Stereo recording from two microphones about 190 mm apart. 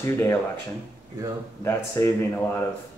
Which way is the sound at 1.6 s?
15° left (ahead or behind).